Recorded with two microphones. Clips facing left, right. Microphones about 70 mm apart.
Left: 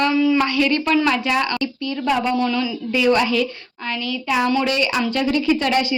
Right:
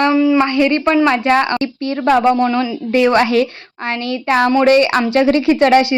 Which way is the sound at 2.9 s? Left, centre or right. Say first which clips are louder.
Right 5 dB; right.